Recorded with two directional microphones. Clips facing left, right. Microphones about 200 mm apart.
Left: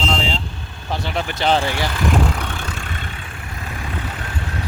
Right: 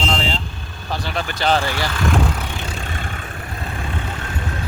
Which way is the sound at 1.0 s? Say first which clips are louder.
Left 1 dB; 20° left (ahead or behind).